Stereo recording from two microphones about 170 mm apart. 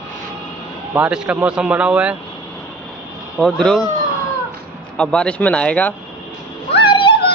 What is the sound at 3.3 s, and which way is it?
Speech, 5° left (ahead or behind).